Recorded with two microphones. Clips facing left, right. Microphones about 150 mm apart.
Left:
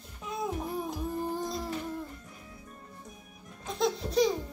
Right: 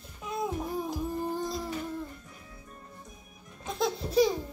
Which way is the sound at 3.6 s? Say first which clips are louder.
Left 1 dB; centre (ahead or behind).